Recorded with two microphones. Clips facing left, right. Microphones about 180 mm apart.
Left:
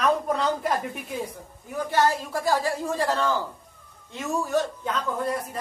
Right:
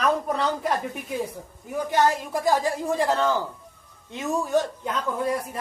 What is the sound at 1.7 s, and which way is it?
Speech, 15° right (ahead or behind).